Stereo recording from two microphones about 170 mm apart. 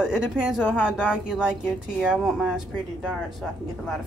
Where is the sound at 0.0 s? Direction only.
5° right (ahead or behind).